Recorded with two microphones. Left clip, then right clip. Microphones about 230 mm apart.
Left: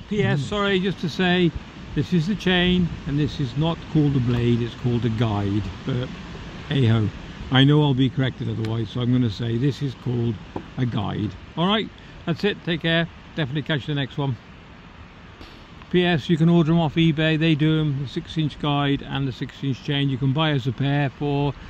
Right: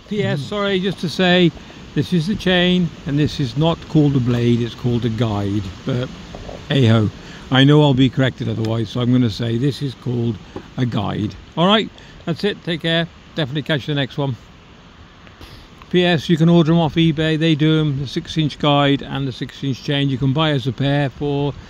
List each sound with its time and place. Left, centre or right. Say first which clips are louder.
0.1 s speech: right 2 dB; centre; by 11.9 s right
12.3 s speech: right 3 dB; centre
15.9 s speech: right 5 dB; right